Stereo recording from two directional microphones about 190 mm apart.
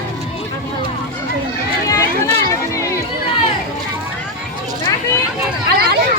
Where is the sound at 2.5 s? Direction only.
15° left (ahead or behind).